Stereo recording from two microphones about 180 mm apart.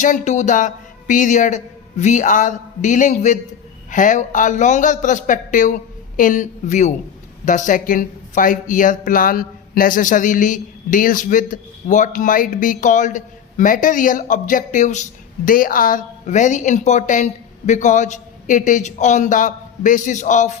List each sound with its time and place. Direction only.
0.0 s speech: 40° left (ahead or behind)